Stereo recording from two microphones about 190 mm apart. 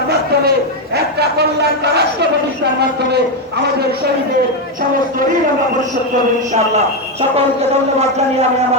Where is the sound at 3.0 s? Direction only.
60° right (ahead or behind).